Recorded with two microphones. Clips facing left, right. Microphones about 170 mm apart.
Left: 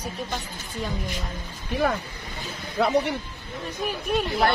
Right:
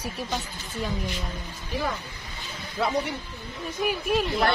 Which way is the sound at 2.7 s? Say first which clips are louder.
Left 4 dB; 65° left (ahead or behind).